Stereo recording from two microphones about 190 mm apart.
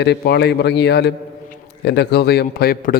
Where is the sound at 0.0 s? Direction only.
60° left (ahead or behind).